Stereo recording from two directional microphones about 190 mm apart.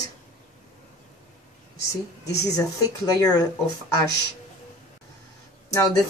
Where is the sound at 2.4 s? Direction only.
20° left (ahead or behind).